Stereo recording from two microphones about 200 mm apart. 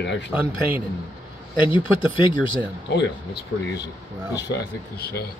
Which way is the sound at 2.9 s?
55° left (ahead or behind).